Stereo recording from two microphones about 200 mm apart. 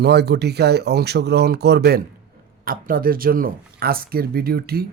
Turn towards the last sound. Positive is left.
turn(degrees=-50)  # may be behind; listen again after turning